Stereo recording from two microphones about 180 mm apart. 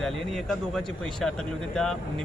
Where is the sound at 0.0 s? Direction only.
Centre (ahead or behind).